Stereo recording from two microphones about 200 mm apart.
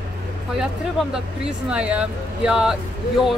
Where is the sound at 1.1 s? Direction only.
5° right (ahead or behind).